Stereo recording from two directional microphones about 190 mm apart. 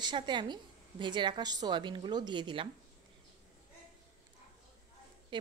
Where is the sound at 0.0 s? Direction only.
25° right (ahead or behind).